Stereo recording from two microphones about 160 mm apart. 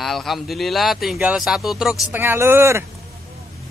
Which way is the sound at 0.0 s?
Centre (ahead or behind).